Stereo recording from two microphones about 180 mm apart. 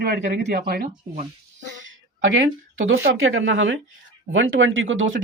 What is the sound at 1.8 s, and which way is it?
Speech, 90° right.